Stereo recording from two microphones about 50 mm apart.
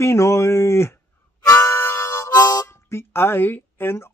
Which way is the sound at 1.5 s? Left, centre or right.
Left.